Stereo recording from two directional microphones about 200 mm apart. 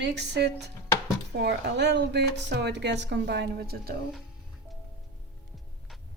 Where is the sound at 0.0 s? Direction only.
60° right (ahead or behind).